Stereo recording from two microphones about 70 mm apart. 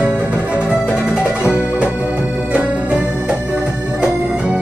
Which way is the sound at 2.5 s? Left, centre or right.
Centre.